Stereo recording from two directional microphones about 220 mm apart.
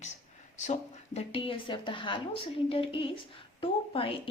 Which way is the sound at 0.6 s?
30° left (ahead or behind).